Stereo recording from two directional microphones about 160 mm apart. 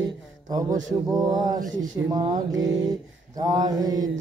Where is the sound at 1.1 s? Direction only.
25° right (ahead or behind).